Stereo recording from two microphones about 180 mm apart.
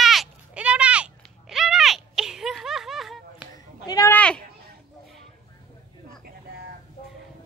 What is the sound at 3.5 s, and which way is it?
Cat, 20° left (ahead or behind).